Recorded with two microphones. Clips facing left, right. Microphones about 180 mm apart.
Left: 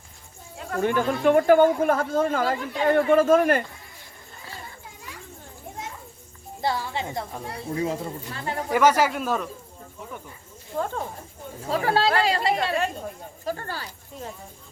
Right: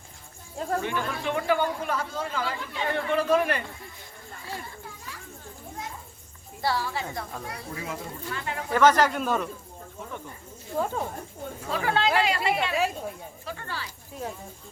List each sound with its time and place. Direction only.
0.8 s speech: 50° left (ahead or behind)
6.6 s a woman's voice: 20° left (ahead or behind)
8.7 s speech: 10° left (ahead or behind)
10.8 s speech: 5° right (ahead or behind)
11.6 s speech: 35° left (ahead or behind)